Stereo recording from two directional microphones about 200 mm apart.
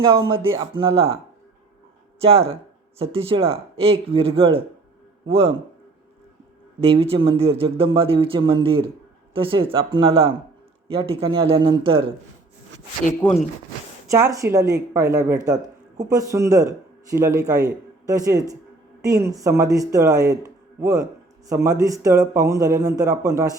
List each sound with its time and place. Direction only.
0.0 s speech: 25° right (ahead or behind)
6.8 s speech: 30° right (ahead or behind)
13.2 s speech: 20° left (ahead or behind)
14.1 s a man's voice: 15° right (ahead or behind)